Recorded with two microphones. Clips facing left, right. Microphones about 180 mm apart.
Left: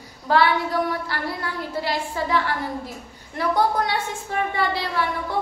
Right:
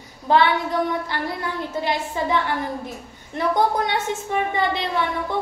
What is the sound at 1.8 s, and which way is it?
A woman's voice, 20° right (ahead or behind).